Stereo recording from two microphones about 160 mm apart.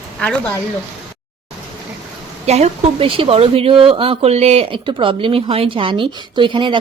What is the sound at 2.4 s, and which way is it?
Speech, 40° right (ahead or behind).